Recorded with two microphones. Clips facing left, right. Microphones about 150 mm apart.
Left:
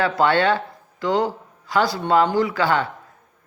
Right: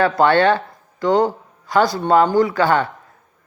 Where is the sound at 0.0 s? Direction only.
50° right (ahead or behind).